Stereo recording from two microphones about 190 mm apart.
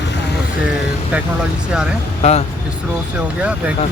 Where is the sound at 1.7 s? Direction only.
5° right (ahead or behind).